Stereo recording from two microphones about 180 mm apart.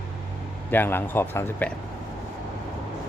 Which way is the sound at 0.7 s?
10° left (ahead or behind).